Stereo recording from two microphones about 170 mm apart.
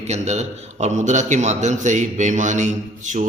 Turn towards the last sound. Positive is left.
turn(degrees=-45)  # may be behind; listen again after turning